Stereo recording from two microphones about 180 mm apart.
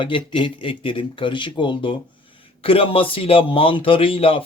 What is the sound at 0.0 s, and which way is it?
Speech, 25° left (ahead or behind).